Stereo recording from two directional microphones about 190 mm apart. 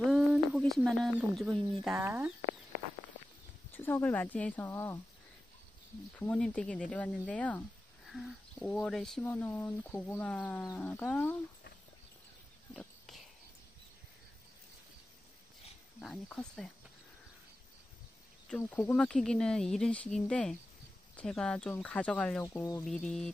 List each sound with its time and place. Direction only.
0.1 s speech: centre (ahead or behind)
3.7 s speech: 10° left (ahead or behind)
6.1 s speech: 5° left (ahead or behind)
12.7 s a sound: centre (ahead or behind)
16.0 s speech: 5° left (ahead or behind)
18.5 s speech: 10° left (ahead or behind)
22.4 s speech: 15° left (ahead or behind)
22.8 s speech: 5° left (ahead or behind)